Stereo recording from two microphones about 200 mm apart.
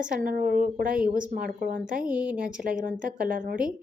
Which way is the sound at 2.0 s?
5° right (ahead or behind).